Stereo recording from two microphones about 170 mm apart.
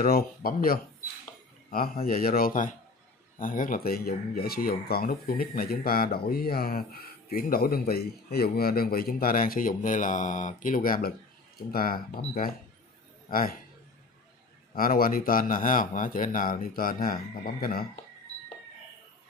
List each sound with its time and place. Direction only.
0.0 s speech: 60° left (ahead or behind)
2.0 s speech: 60° left (ahead or behind)
14.7 s speech: 55° left (ahead or behind)